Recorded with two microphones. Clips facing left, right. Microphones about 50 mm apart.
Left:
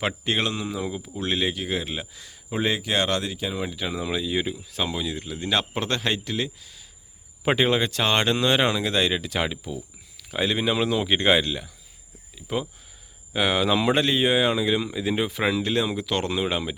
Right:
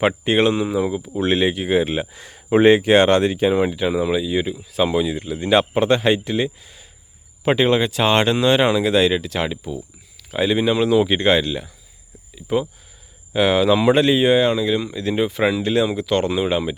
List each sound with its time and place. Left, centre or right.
0.3 s speech: right
1.1 s speech: right
3.7 s speech: centre
4.9 s speech: centre
7.4 s speech: centre